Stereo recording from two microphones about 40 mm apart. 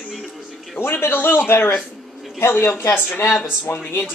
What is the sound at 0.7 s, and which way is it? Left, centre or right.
Speech, left.